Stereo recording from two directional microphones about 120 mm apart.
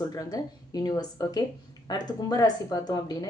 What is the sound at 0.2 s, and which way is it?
A woman's voice, 30° left (ahead or behind).